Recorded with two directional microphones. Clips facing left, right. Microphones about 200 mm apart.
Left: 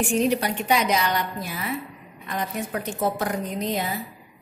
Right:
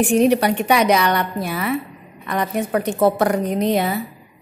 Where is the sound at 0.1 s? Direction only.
65° right (ahead or behind).